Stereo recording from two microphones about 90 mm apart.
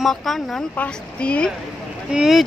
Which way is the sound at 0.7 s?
15° left (ahead or behind).